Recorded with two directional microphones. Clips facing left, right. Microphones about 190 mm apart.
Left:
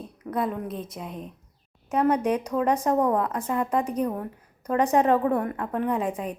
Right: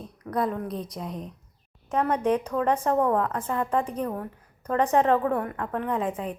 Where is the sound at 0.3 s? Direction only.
5° left (ahead or behind).